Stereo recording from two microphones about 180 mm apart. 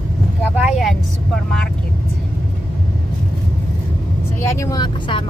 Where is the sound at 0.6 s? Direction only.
Centre (ahead or behind).